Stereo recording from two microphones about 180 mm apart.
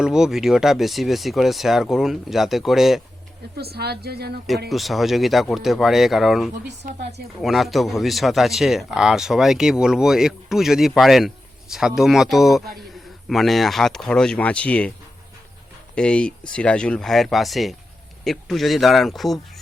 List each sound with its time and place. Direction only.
0.0 s speech: 5° right (ahead or behind)
3.6 s speech: 60° right (ahead or behind)
4.7 s speech: centre (ahead or behind)
6.7 s a woman's voice: 65° right (ahead or behind)
7.4 s speech: centre (ahead or behind)
16.0 s speech: 5° left (ahead or behind)